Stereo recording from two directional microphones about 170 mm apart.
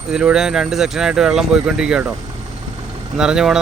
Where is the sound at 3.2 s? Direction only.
5° right (ahead or behind).